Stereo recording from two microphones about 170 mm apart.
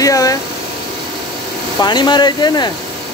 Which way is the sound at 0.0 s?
20° left (ahead or behind).